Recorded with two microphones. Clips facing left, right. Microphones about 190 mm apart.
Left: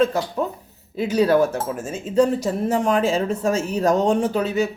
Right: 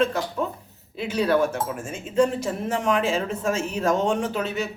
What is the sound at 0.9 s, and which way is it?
Speech, 40° left (ahead or behind).